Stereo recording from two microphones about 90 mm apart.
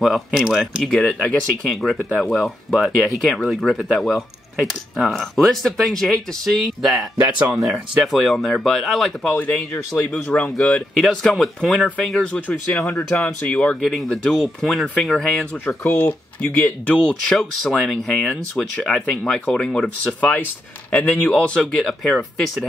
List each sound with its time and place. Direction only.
0.0 s speech: centre (ahead or behind)
7.2 s speech: 25° right (ahead or behind)
7.6 s speech: centre (ahead or behind)
9.2 s speech: 10° left (ahead or behind)
12.4 s speech: 20° left (ahead or behind); by 15.3 s centre (ahead or behind)
15.5 s speech: 20° left (ahead or behind)
17.1 s speech: centre (ahead or behind)
21.7 s speech: 5° left (ahead or behind)